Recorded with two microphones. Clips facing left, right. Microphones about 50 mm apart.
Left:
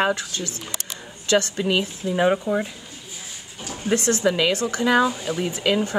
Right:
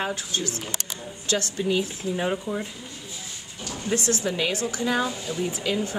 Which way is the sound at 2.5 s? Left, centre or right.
Left.